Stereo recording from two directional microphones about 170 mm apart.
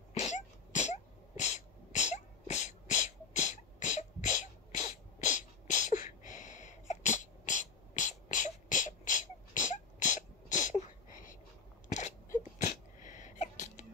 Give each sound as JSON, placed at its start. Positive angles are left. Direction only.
{"t": 0.1, "sound": "sneeze", "side_deg": 45}